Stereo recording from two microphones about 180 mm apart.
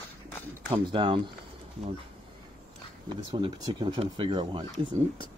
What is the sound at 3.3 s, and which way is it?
Speech, 25° right (ahead or behind).